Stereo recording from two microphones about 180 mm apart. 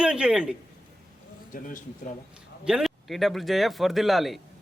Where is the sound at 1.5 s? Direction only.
45° left (ahead or behind).